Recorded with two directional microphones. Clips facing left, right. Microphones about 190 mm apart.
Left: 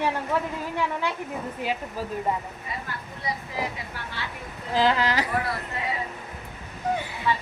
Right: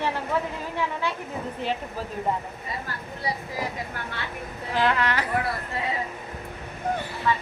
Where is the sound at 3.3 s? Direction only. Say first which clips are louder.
Right 1 dB; 35° right (ahead or behind).